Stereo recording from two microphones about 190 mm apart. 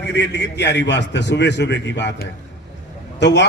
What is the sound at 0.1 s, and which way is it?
A man's voice, 65° left (ahead or behind).